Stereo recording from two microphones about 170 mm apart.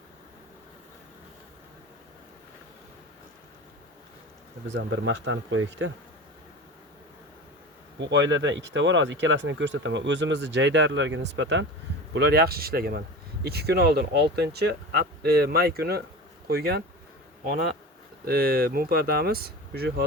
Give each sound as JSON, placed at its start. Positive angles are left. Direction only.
{"t": 4.7, "sound": "speech", "side_deg": -90}
{"t": 7.9, "sound": "speech", "side_deg": -90}
{"t": 12.1, "sound": "speech", "side_deg": -75}
{"t": 18.3, "sound": "speech", "side_deg": -60}